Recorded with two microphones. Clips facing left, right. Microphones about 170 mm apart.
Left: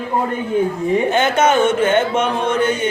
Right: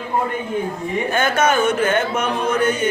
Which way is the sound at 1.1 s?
25° left (ahead or behind).